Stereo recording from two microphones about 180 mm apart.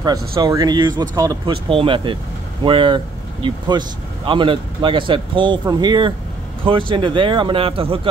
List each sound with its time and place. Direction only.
0.4 s speech: 20° right (ahead or behind)